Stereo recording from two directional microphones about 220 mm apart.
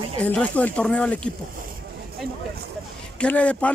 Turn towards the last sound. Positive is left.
turn(degrees=5)  # may be behind; listen again after turning